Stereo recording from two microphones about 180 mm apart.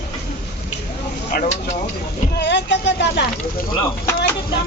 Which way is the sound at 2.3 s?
70° left (ahead or behind).